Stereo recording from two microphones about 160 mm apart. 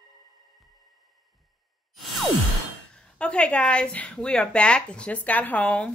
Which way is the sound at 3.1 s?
5° left (ahead or behind).